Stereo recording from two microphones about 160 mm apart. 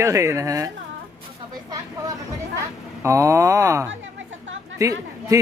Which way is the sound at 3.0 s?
20° right (ahead or behind).